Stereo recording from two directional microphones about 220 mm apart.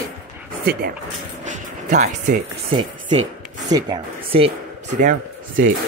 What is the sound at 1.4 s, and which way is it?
Music, 35° right (ahead or behind).